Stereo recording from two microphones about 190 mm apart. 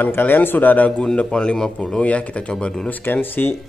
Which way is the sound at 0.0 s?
10° left (ahead or behind).